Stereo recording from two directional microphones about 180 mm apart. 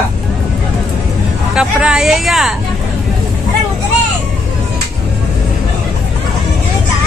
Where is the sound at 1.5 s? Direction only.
5° right (ahead or behind).